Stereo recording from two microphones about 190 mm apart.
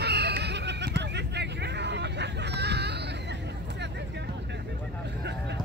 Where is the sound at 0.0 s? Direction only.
60° right (ahead or behind).